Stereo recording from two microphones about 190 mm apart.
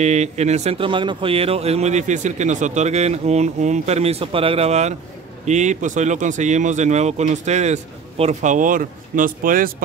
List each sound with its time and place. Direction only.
0.0 s speech: 35° right (ahead or behind)